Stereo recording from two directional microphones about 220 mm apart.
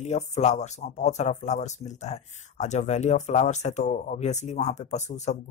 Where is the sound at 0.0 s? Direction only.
30° left (ahead or behind).